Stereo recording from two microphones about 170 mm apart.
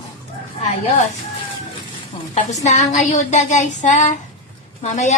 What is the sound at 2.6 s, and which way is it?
Speech, 45° left (ahead or behind).